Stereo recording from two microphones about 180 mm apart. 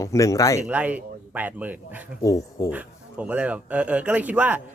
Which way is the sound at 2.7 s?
10° right (ahead or behind).